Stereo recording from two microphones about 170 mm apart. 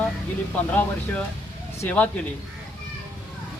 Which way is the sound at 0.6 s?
10° left (ahead or behind).